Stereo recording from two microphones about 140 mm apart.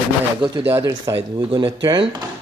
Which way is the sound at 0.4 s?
35° right (ahead or behind).